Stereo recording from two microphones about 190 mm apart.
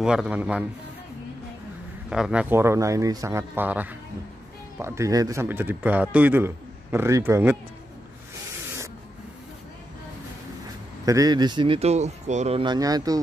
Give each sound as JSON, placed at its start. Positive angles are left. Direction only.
{"t": 0.0, "sound": "a man's voice", "side_deg": -5}
{"t": 2.0, "sound": "a man's voice", "side_deg": -5}
{"t": 11.1, "sound": "speech", "side_deg": -20}